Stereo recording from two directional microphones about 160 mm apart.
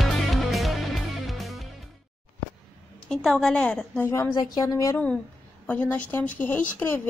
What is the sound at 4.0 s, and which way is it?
Speech, 15° left (ahead or behind).